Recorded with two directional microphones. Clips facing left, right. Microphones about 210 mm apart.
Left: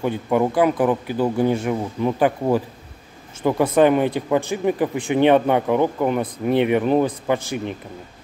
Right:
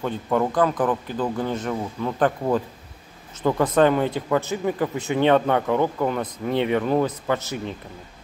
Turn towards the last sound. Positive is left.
turn(degrees=15)  # may be behind; listen again after turning